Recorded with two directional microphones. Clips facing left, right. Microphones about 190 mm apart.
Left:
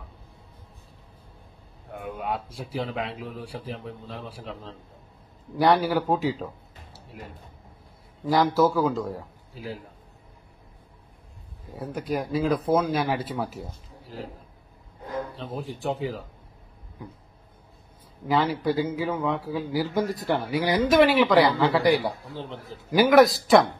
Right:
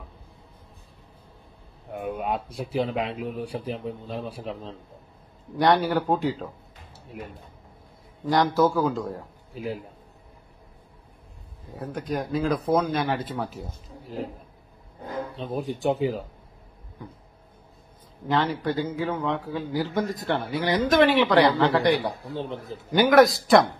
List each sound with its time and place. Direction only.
1.9 s speech: 20° right (ahead or behind)
5.6 s a man's voice: centre (ahead or behind)
8.3 s a man's voice: 5° left (ahead or behind)
11.8 s a man's voice: 5° left (ahead or behind)
15.3 s speech: 20° right (ahead or behind)
18.3 s a man's voice: 5° left (ahead or behind)
22.3 s speech: 15° right (ahead or behind)
22.8 s a man's voice: centre (ahead or behind)